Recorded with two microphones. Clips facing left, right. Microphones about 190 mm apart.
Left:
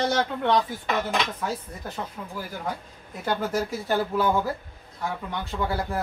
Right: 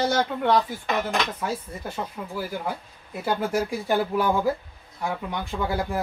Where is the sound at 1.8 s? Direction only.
10° right (ahead or behind).